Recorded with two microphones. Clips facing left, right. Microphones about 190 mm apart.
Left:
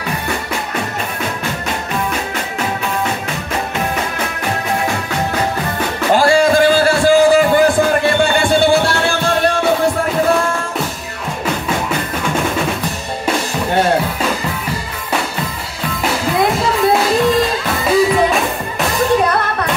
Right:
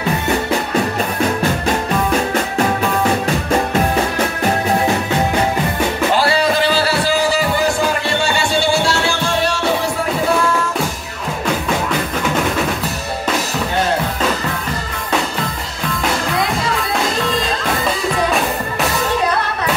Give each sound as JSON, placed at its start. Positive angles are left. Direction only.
{"t": 6.1, "sound": "music", "side_deg": 45}